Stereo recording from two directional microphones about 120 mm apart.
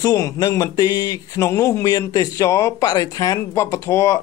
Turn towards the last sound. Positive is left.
turn(degrees=25)  # may be behind; listen again after turning